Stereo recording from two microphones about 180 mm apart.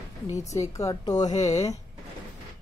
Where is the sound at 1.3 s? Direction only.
40° left (ahead or behind).